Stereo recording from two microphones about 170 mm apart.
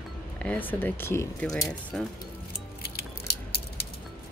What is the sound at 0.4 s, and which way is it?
Speech, 10° left (ahead or behind).